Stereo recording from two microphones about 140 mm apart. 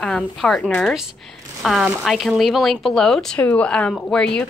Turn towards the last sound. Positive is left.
turn(degrees=5)  # may be behind; listen again after turning